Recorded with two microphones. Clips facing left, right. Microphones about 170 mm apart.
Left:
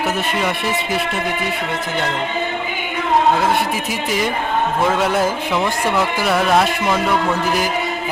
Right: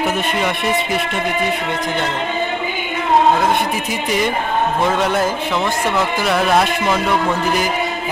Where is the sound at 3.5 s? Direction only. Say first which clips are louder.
Right 1 dB; 5° left (ahead or behind).